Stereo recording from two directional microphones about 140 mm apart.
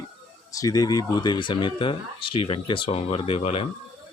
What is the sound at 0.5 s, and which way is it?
Speech, 25° left (ahead or behind).